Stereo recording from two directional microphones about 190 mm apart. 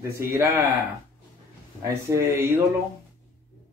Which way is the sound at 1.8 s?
15° right (ahead or behind).